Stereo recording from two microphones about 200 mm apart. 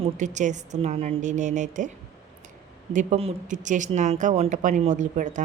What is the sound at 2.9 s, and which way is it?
A woman's voice, 35° right (ahead or behind).